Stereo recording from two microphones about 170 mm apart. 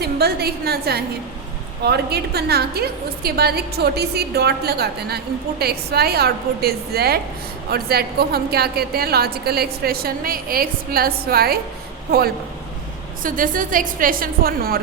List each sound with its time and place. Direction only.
0.0 s a woman's voice: 70° right (ahead or behind)
13.2 s a woman's voice: 55° right (ahead or behind)